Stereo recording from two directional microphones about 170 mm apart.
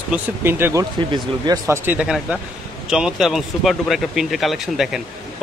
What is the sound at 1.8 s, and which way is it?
Speech, 5° right (ahead or behind).